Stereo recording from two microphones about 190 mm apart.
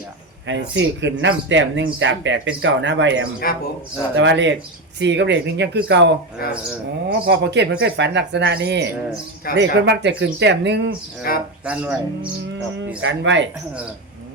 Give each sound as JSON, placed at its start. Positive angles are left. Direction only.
{"t": 0.4, "sound": "speech", "side_deg": -70}
{"t": 7.1, "sound": "speech", "side_deg": -65}
{"t": 11.3, "sound": "speech", "side_deg": 55}
{"t": 11.6, "sound": "speech", "side_deg": -5}
{"t": 13.0, "sound": "speech", "side_deg": -80}